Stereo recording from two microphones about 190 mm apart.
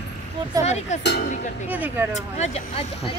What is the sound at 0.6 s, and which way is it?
Speech, 35° left (ahead or behind).